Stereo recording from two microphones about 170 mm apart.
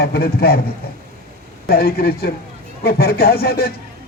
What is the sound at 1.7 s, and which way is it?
A man's voice, 65° left (ahead or behind).